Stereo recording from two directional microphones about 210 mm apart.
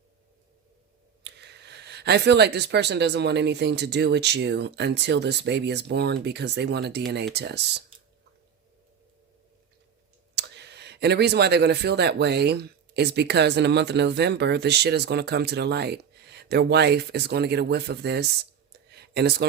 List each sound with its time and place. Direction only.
1.2 s speech: 55° right (ahead or behind)
10.3 s speech: 55° right (ahead or behind)
18.9 s a sound: 50° right (ahead or behind)